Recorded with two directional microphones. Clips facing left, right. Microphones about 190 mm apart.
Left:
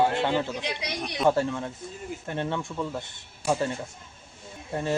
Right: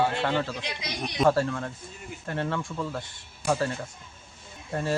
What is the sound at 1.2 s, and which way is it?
Speech, 15° left (ahead or behind).